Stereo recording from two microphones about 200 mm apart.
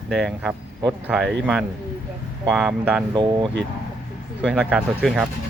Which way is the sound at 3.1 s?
25° right (ahead or behind).